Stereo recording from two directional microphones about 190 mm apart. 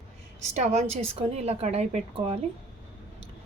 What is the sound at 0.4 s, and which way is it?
A woman's voice, 35° right (ahead or behind).